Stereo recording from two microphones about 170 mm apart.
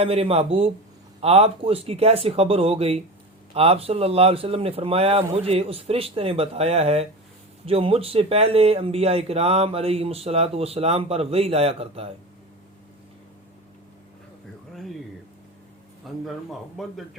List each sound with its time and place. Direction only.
0.0 s speech: 35° right (ahead or behind)
14.7 s a sound: centre (ahead or behind)
16.0 s speech: centre (ahead or behind)